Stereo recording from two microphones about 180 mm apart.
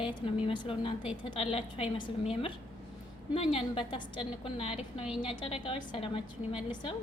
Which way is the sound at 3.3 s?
30° left (ahead or behind).